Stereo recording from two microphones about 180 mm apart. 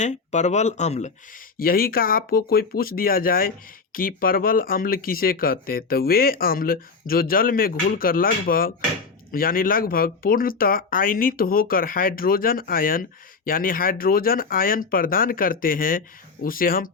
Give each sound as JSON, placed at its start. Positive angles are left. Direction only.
{"t": 0.0, "sound": "speech", "side_deg": 40}
{"t": 1.5, "sound": "speech", "side_deg": 55}